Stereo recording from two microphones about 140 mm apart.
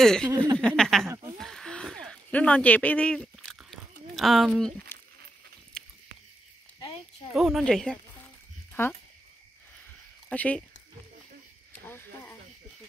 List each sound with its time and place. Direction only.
0.0 s speech: 5° left (ahead or behind)
1.0 s speech: 20° right (ahead or behind)
1.4 s a sound: 5° left (ahead or behind)
7.3 s speech: centre (ahead or behind); by 8.9 s 15° left (ahead or behind)
10.3 s speech: 10° left (ahead or behind)
11.8 s a sound: 15° left (ahead or behind)